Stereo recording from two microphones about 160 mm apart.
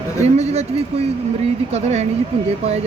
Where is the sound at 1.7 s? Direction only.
40° right (ahead or behind).